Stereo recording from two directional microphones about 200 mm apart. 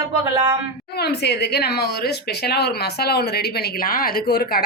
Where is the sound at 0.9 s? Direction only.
55° left (ahead or behind).